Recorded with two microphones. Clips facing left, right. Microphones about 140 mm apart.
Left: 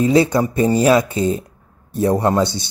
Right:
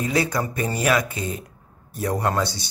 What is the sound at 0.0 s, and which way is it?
Speech, 25° left (ahead or behind).